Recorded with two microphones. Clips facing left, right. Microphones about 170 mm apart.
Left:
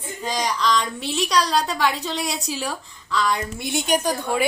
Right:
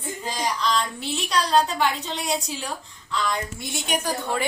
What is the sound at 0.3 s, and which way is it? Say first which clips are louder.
A woman's voice: left 3 dB; 85° left.